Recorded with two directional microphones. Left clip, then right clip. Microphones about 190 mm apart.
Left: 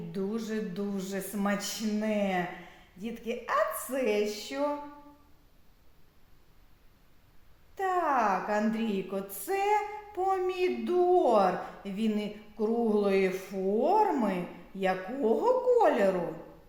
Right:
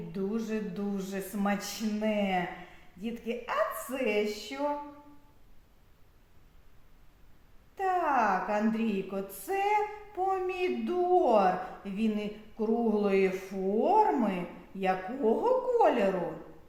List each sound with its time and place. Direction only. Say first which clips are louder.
0.1 s a woman's voice: even; 30° left (ahead or behind)
7.8 s a woman's voice: even; 35° left (ahead or behind)